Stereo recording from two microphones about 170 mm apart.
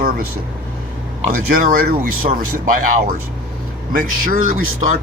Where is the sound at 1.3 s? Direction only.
55° right (ahead or behind).